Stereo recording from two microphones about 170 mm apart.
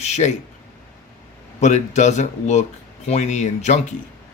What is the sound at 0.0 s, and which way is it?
Speech, 45° left (ahead or behind).